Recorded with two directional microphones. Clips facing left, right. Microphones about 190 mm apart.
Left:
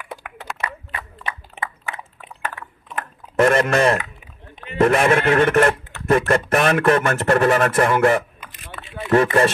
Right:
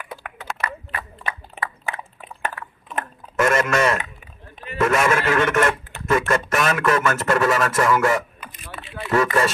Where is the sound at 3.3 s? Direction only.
35° left (ahead or behind).